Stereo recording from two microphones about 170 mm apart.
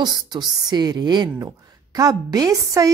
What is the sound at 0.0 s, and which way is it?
A woman's voice, 25° right (ahead or behind).